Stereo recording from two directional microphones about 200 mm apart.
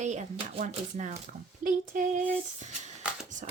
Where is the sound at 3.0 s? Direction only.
5° right (ahead or behind).